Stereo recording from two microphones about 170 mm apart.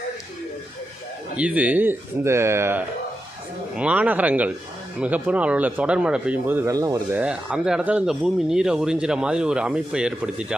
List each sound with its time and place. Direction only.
1.4 s speech: 10° right (ahead or behind)
7.2 s speech: 5° right (ahead or behind)